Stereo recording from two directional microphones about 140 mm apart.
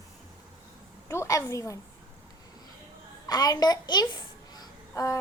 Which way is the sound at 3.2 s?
30° left (ahead or behind).